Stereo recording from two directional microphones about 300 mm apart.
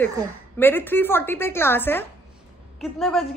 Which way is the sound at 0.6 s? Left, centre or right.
Centre.